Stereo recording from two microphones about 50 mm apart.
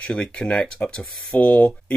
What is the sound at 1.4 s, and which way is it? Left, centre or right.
Speech, left.